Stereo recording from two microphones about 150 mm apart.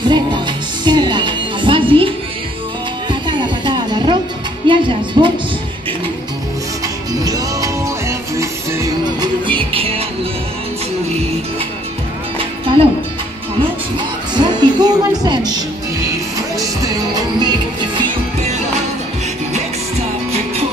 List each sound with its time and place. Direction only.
0.8 s music: 30° right (ahead or behind)
7.2 s music: 25° right (ahead or behind)
9.5 s music: 35° right (ahead or behind)
12.4 s music: 35° right (ahead or behind)